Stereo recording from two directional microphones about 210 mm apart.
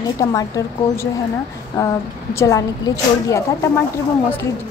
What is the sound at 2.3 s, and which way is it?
A woman's voice, 15° left (ahead or behind).